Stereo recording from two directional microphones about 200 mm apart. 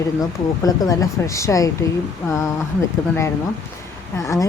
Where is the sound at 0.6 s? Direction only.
15° left (ahead or behind).